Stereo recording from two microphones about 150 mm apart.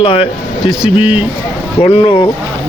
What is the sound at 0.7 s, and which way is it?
Speech, 5° right (ahead or behind).